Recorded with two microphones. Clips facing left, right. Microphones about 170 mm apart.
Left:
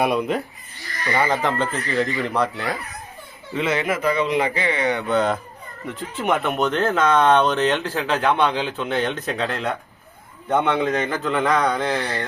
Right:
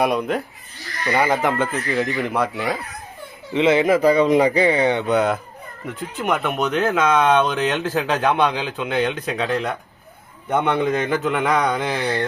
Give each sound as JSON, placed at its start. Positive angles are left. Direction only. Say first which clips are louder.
{"t": 0.0, "sound": "speech", "louder": "right 1 dB", "side_deg": 0}
{"t": 1.1, "sound": "speech", "louder": "right 2 dB", "side_deg": -10}
{"t": 3.5, "sound": "speech", "louder": "right 7 dB", "side_deg": -25}
{"t": 5.1, "sound": "speech", "louder": "right 1 dB", "side_deg": -10}
{"t": 7.9, "sound": "speech", "louder": "right 1 dB", "side_deg": -15}